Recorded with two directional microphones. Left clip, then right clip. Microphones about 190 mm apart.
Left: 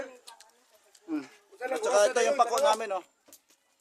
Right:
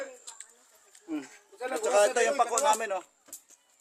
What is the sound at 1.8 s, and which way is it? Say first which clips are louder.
Speech: even; 20° left (ahead or behind).